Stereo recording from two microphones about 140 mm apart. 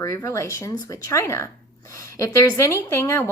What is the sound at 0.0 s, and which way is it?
A woman's voice, 25° left (ahead or behind).